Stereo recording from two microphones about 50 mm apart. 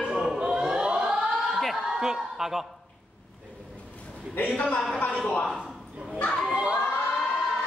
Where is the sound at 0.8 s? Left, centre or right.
Centre.